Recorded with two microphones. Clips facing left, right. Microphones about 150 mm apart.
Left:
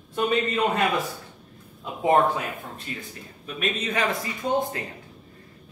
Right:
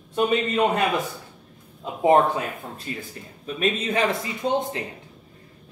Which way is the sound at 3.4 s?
35° right (ahead or behind).